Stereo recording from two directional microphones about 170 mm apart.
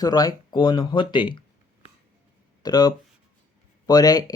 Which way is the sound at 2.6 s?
25° left (ahead or behind).